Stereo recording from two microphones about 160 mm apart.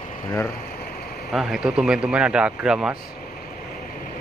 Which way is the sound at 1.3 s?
Centre (ahead or behind).